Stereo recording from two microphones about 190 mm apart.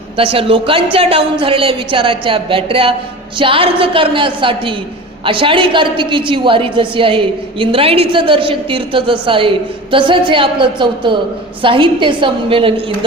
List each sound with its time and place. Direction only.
0.2 s a woman's voice: 30° right (ahead or behind)